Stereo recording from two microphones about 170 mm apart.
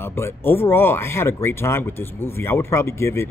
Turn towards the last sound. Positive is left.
turn(degrees=15)  # may be behind; listen again after turning